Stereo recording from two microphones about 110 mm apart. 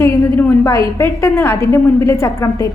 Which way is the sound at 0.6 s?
25° left (ahead or behind).